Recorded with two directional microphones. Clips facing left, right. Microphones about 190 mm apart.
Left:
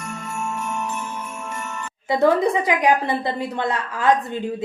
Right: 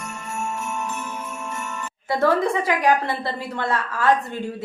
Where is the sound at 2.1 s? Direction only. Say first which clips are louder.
Left 3 dB; 15° left (ahead or behind).